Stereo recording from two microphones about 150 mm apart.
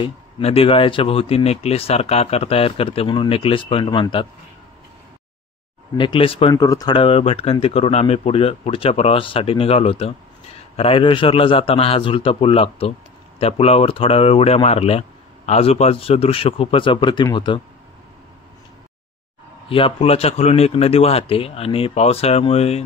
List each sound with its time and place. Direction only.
0.0 s speech: 40° left (ahead or behind)
5.9 s speech: 35° left (ahead or behind)
6.5 s speech: 25° left (ahead or behind)
19.7 s speech: 40° left (ahead or behind)